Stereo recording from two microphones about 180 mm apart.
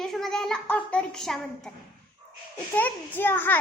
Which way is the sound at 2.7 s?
10° left (ahead or behind).